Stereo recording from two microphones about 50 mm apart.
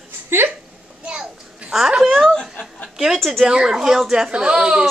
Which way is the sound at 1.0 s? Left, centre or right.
Centre.